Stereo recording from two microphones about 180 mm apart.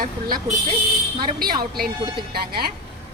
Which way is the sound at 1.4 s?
55° right (ahead or behind).